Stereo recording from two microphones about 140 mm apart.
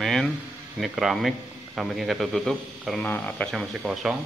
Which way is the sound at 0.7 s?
Centre (ahead or behind).